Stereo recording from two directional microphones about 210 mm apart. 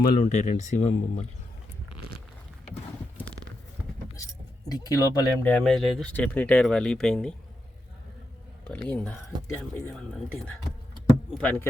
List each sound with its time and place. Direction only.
0.0 s speech: 40° left (ahead or behind)
4.7 s speech: 20° left (ahead or behind)
5.5 s speech: 5° left (ahead or behind)
8.7 s speech: 5° left (ahead or behind)